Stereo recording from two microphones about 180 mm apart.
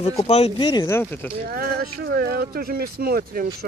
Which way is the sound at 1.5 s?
60° right (ahead or behind).